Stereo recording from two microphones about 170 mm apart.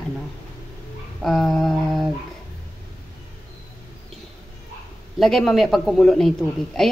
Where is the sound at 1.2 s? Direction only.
Centre (ahead or behind).